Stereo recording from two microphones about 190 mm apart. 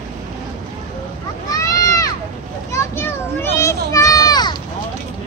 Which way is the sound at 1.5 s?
20° left (ahead or behind).